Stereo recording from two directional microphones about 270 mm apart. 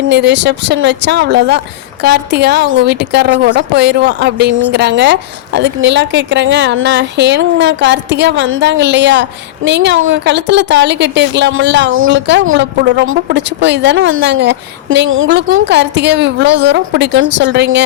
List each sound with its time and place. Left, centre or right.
0.1 s a woman's voice: right